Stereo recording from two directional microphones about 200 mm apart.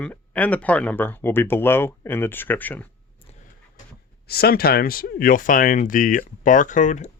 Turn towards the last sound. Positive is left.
turn(degrees=40)  # may be behind; listen again after turning